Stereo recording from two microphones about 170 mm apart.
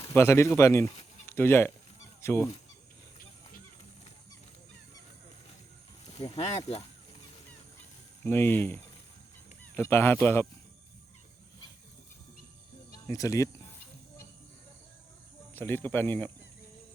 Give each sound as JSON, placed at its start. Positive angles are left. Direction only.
{"t": 0.0, "sound": "speech", "side_deg": 15}
{"t": 1.3, "sound": "honk", "side_deg": 15}
{"t": 6.1, "sound": "speech", "side_deg": 35}
{"t": 8.2, "sound": "speech", "side_deg": 10}
{"t": 13.1, "sound": "speech", "side_deg": 20}
{"t": 15.5, "sound": "speech", "side_deg": 10}